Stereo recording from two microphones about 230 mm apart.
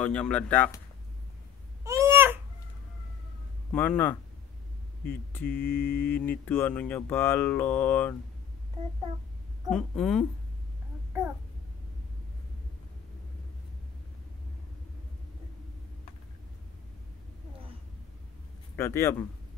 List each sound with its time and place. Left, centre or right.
0.0 s speech: centre
1.9 s a sound: centre
3.7 s speech: centre
5.4 s mantra: left
6.2 s speech: centre
9.7 s speech: centre
18.8 s speech: centre